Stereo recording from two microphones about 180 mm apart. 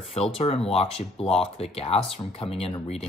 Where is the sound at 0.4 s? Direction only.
35° left (ahead or behind).